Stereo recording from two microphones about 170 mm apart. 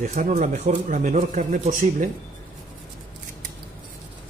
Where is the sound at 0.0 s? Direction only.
50° right (ahead or behind).